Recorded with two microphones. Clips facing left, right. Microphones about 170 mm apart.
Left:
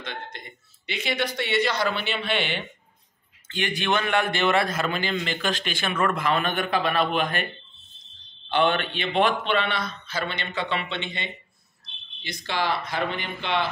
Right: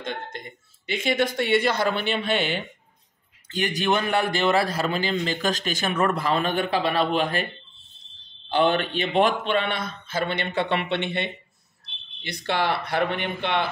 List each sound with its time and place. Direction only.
0.0 s a man's voice: 45° right (ahead or behind)
8.5 s a man's voice: 35° right (ahead or behind); by 13.7 s 55° right (ahead or behind)